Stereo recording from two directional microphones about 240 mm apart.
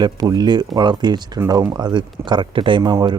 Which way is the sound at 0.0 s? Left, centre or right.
Centre.